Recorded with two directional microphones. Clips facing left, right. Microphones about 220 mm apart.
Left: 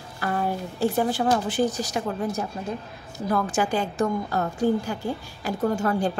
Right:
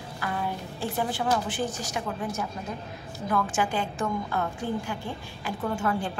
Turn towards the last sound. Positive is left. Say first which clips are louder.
# left 5 dB
turn(degrees=40)  # may be behind; listen again after turning